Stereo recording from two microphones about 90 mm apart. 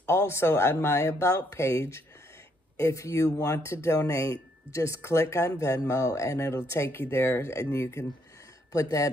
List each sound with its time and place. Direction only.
0.0 s speech: 30° left (ahead or behind)